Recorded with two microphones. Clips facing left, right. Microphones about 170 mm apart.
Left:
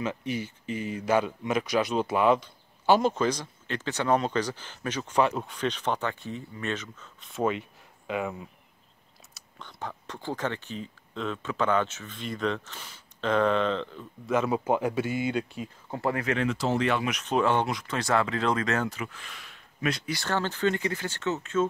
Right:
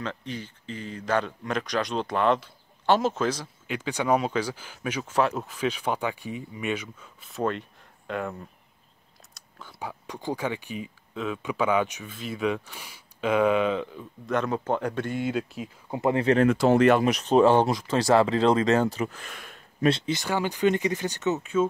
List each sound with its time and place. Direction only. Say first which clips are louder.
0.0 s speech: left 3 dB; 10° left (ahead or behind); by 14.0 s 10° right (ahead or behind)
14.2 s speech: left 1 dB; 5° left (ahead or behind)
15.9 s speech: right 6 dB; 20° right (ahead or behind)
16.3 s speech: right 7 dB; 55° right (ahead or behind)
17.1 s speech: right 6 dB; 35° right (ahead or behind); by 19.6 s 50° right (ahead or behind)
19.8 s speech: right 6 dB; 25° right (ahead or behind)
20.2 s speech: right 3 dB; 15° right (ahead or behind)